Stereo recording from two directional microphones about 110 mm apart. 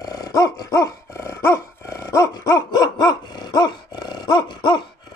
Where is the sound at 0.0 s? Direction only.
35° left (ahead or behind).